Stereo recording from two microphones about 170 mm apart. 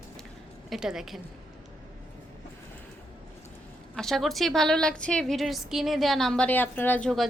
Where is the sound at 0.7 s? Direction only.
5° right (ahead or behind).